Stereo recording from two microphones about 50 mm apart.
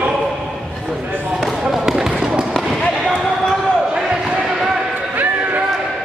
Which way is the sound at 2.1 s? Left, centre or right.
Centre.